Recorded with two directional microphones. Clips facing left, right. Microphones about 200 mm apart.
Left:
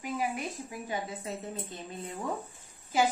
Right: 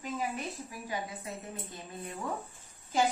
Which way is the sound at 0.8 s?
25° left (ahead or behind).